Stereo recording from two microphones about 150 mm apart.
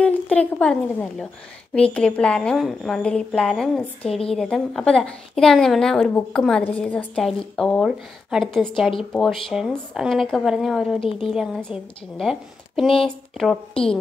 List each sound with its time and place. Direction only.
0.0 s a woman's voice: 10° left (ahead or behind)
4.0 s a woman's voice: 40° left (ahead or behind)
4.3 s a woman's voice: 5° left (ahead or behind)